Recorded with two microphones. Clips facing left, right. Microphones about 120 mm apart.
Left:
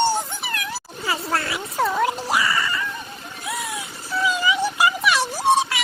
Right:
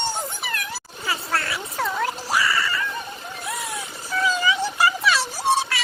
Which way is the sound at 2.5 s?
20° left (ahead or behind).